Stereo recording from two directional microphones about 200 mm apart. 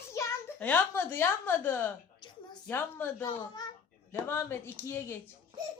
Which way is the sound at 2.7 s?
10° left (ahead or behind).